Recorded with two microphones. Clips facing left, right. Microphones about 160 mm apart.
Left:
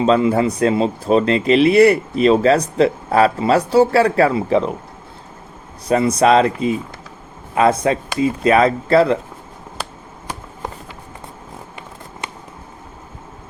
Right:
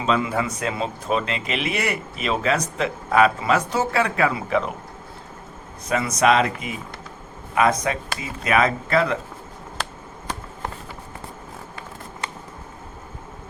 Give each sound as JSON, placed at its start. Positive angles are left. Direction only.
{"t": 0.0, "sound": "speech", "side_deg": 35}
{"t": 5.9, "sound": "speech", "side_deg": 30}